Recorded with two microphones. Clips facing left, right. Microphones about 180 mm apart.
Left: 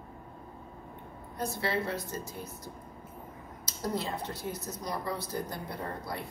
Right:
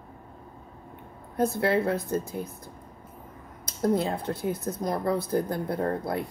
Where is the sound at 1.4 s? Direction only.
55° right (ahead or behind).